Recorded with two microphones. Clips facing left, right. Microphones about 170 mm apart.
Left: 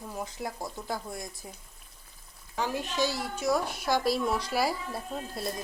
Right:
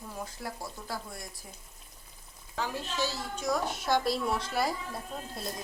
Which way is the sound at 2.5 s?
15° left (ahead or behind).